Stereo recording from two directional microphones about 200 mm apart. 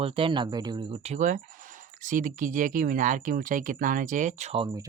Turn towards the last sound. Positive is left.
turn(degrees=-35)  # may be behind; listen again after turning